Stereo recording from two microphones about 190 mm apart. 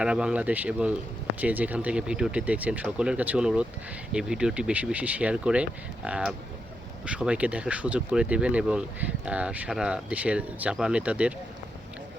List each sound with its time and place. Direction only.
0.0 s speech: 5° right (ahead or behind)